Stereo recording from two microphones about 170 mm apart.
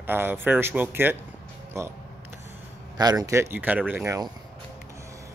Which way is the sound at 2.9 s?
20° right (ahead or behind).